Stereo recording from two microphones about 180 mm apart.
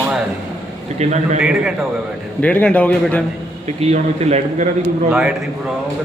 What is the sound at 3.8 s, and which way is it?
Speech, 35° right (ahead or behind).